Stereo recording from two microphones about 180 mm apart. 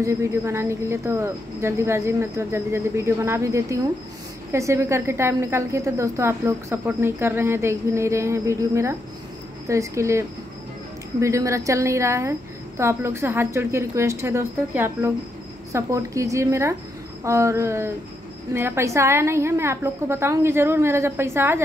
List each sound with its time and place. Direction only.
0.0 s a woman's voice: 15° right (ahead or behind)